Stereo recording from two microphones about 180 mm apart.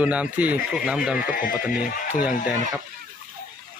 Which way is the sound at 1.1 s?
50° left (ahead or behind).